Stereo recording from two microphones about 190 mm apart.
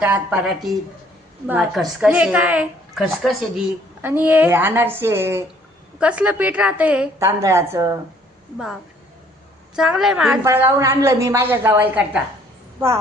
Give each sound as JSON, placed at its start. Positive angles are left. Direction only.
{"t": 0.0, "sound": "a woman's voice", "side_deg": -5}
{"t": 8.5, "sound": "a woman's voice", "side_deg": 0}
{"t": 10.4, "sound": "a woman's voice", "side_deg": -15}